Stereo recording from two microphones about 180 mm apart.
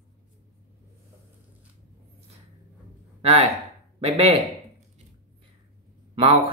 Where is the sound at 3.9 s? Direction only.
35° right (ahead or behind).